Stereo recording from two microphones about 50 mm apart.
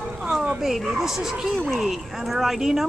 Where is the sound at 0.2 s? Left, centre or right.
Centre.